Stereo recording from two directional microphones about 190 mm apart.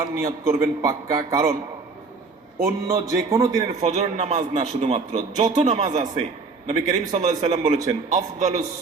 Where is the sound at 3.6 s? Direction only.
35° right (ahead or behind).